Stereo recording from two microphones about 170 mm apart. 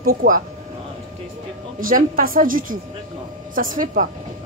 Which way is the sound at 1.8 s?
55° right (ahead or behind).